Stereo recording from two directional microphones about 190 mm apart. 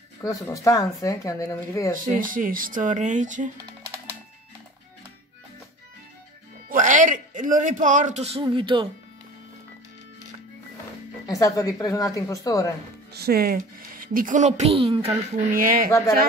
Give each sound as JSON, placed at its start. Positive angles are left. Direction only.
{"t": 0.2, "sound": "speech", "side_deg": 20}
{"t": 2.1, "sound": "speech", "side_deg": -45}
{"t": 6.7, "sound": "a man's voice", "side_deg": -45}
{"t": 11.2, "sound": "speech", "side_deg": 15}
{"t": 13.1, "sound": "speech", "side_deg": -55}
{"t": 15.5, "sound": "speech", "side_deg": -45}